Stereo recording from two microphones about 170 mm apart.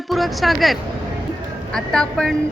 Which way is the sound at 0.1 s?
Centre (ahead or behind).